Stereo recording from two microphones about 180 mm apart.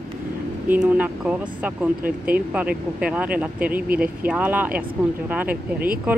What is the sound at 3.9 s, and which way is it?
Speech, 55° right (ahead or behind).